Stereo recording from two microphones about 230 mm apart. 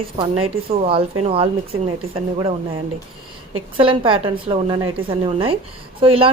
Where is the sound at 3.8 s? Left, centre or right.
Right.